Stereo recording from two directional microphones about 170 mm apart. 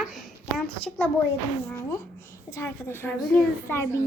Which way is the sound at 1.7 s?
15° left (ahead or behind).